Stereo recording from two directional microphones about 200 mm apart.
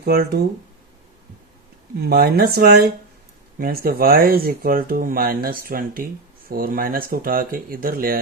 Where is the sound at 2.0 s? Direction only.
50° right (ahead or behind).